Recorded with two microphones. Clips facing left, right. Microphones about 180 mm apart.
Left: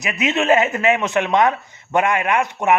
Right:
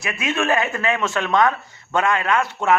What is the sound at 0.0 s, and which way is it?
Speech, 20° left (ahead or behind).